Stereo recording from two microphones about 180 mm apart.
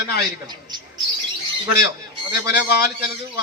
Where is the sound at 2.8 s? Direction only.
65° left (ahead or behind).